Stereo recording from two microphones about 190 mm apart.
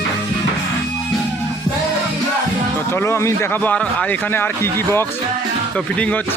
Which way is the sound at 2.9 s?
15° left (ahead or behind).